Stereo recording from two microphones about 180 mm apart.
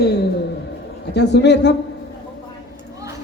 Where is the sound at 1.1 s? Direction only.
70° left (ahead or behind).